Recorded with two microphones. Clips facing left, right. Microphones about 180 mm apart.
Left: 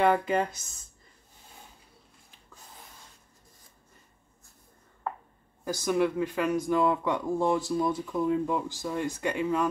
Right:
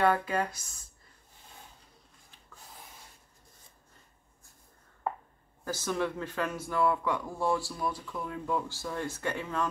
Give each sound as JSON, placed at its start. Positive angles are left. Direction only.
{"t": 0.0, "sound": "speech", "side_deg": 20}
{"t": 5.7, "sound": "speech", "side_deg": 15}